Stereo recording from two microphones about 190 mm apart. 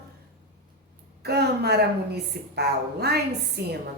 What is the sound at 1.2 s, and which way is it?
Speech, 60° right (ahead or behind).